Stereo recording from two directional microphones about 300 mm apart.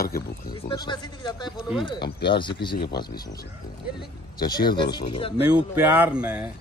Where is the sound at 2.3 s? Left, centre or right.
Centre.